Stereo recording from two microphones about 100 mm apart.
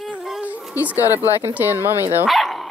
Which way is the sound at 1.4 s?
20° right (ahead or behind).